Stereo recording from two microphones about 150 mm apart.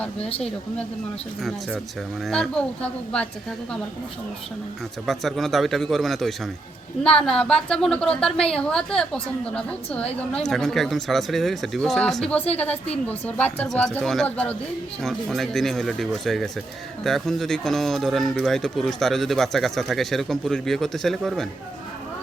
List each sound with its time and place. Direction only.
0.2 s speech: 40° left (ahead or behind)
2.2 s a woman's voice: centre (ahead or behind)
5.0 s a woman's voice: centre (ahead or behind)